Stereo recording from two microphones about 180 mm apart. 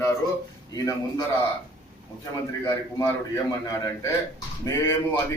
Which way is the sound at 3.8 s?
20° left (ahead or behind).